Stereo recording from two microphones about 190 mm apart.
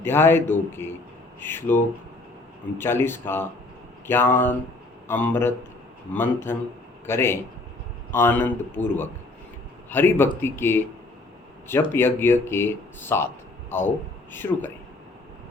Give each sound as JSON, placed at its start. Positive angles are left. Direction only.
{"t": 0.0, "sound": "speech", "side_deg": 10}